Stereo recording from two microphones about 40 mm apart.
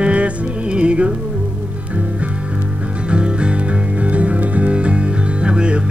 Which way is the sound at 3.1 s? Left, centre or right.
Right.